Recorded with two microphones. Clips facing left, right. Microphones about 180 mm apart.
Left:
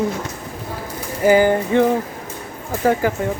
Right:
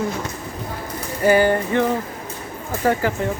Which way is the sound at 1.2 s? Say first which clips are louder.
Left 2 dB; 15° left (ahead or behind).